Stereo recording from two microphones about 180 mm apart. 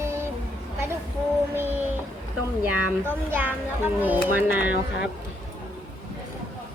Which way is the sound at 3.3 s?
10° right (ahead or behind).